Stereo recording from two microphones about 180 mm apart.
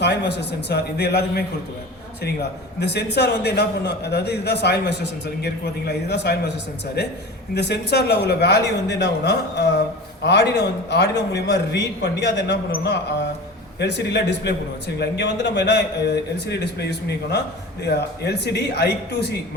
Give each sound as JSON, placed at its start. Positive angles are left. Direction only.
{"t": 0.0, "sound": "a man's voice", "side_deg": 70}
{"t": 7.5, "sound": "a man's voice", "side_deg": 70}